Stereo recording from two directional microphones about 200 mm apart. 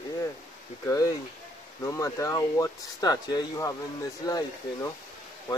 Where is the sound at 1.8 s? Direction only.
15° left (ahead or behind).